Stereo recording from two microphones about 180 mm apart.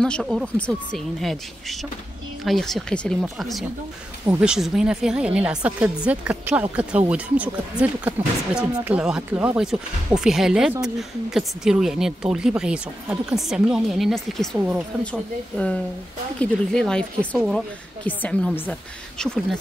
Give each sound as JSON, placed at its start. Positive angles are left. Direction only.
{"t": 0.0, "sound": "speech", "side_deg": 0}